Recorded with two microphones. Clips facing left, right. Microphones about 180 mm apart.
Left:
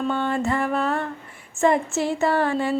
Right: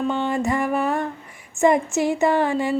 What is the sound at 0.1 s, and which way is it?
A woman's voice, 15° right (ahead or behind).